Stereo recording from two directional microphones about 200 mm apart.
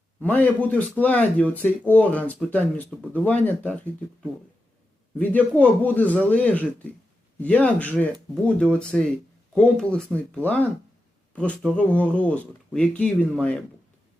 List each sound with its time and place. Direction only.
0.2 s speech: 5° left (ahead or behind)
5.1 s speech: 10° left (ahead or behind)